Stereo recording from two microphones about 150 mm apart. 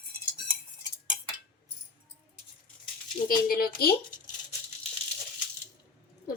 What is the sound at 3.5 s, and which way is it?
Speech, 90° left.